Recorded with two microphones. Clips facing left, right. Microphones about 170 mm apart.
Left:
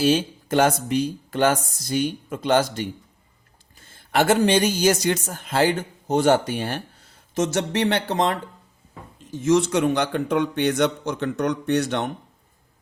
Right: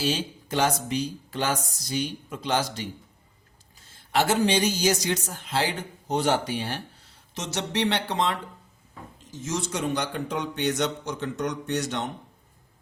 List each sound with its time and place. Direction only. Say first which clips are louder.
0.0 s speech: left 8 dB; 50° left (ahead or behind)
4.1 s speech: left 4 dB; 55° left (ahead or behind)
9.3 s a man's voice: left 11 dB; 60° left (ahead or behind)